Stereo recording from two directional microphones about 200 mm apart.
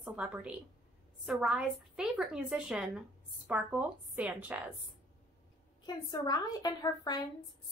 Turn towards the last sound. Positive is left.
turn(degrees=20)  # may be behind; listen again after turning